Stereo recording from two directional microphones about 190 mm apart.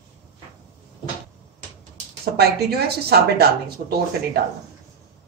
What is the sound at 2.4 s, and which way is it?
A woman's voice, 55° right (ahead or behind).